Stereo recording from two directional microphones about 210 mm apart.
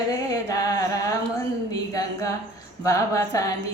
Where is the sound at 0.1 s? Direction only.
15° left (ahead or behind).